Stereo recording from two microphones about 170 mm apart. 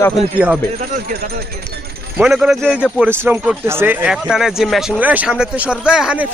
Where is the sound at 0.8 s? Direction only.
60° right (ahead or behind).